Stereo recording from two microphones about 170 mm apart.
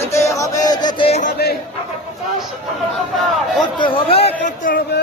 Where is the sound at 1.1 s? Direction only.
45° left (ahead or behind).